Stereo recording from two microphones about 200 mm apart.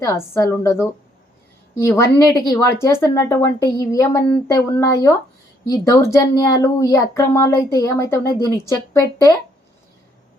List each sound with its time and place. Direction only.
0.0 s a child's voice: 15° left (ahead or behind)
1.9 s a child's voice: 15° left (ahead or behind)